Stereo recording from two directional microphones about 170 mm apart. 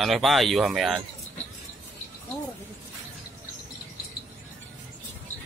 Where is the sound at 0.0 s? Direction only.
Centre (ahead or behind).